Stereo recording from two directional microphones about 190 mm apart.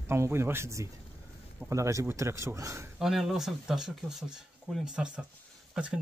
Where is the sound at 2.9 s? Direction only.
Centre (ahead or behind).